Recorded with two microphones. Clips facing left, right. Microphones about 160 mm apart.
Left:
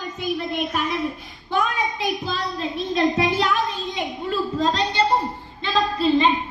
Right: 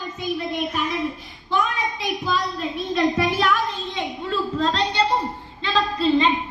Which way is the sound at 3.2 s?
20° left (ahead or behind).